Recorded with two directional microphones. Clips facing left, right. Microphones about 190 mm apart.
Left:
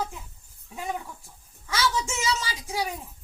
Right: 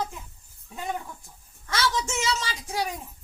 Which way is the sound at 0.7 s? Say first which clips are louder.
Even; 5° left (ahead or behind).